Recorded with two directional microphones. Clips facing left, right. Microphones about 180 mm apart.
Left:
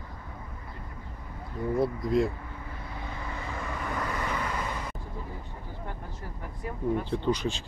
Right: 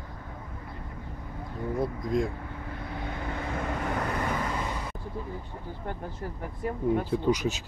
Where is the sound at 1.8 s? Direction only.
5° left (ahead or behind).